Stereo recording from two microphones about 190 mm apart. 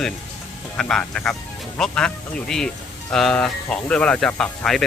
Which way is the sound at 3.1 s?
5° left (ahead or behind).